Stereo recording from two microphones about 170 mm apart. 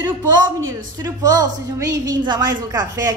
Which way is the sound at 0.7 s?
20° right (ahead or behind).